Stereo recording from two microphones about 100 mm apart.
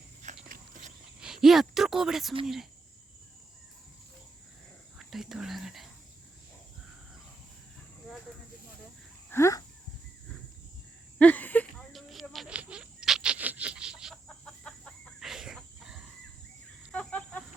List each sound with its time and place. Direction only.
1.2 s speech: 5° right (ahead or behind)
4.9 s speech: 5° right (ahead or behind)
9.3 s dog: 30° left (ahead or behind)
11.2 s a sound: 15° left (ahead or behind)
11.9 s a sound: centre (ahead or behind)
12.5 s chicken: 10° right (ahead or behind)
14.3 s chicken: 5° left (ahead or behind)
15.3 s a sound: 5° right (ahead or behind)
16.9 s chicken: 10° left (ahead or behind)